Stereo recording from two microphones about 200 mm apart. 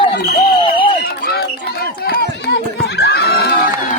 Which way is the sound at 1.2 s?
50° left (ahead or behind).